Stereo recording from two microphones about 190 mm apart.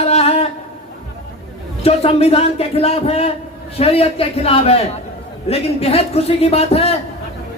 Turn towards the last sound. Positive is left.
turn(degrees=35)  # may be behind; listen again after turning